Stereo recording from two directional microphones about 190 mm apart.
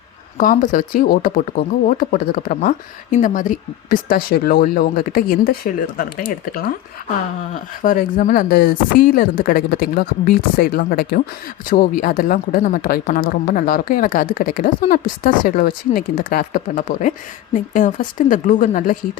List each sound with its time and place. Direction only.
0.3 s a woman's voice: 45° left (ahead or behind)
7.8 s a woman's voice: 45° left (ahead or behind)